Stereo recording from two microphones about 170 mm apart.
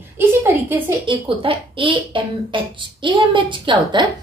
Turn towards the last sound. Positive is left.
turn(degrees=-25)  # may be behind; listen again after turning